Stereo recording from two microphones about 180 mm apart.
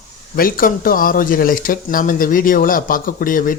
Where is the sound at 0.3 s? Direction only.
55° left (ahead or behind).